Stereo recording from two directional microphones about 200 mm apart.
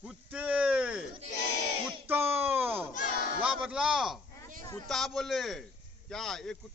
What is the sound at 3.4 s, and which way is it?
A man's voice, 5° right (ahead or behind).